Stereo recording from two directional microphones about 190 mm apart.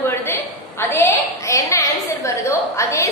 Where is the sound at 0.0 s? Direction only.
10° left (ahead or behind).